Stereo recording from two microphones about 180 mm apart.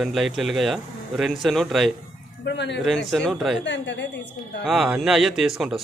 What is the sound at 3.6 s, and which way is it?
Speech, 80° left.